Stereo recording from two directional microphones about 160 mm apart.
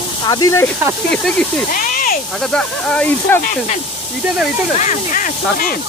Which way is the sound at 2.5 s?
5° left (ahead or behind).